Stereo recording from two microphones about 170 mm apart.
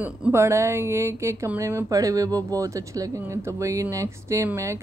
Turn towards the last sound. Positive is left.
turn(degrees=-15)  # may be behind; listen again after turning